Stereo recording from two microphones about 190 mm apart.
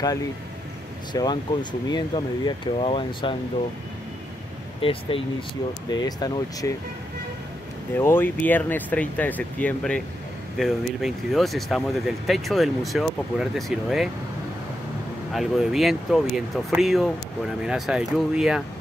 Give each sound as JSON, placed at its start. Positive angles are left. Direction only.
{"t": 1.1, "sound": "speech", "side_deg": 20}
{"t": 4.8, "sound": "speech", "side_deg": 30}
{"t": 7.9, "sound": "speech", "side_deg": 10}
{"t": 15.3, "sound": "speech", "side_deg": 0}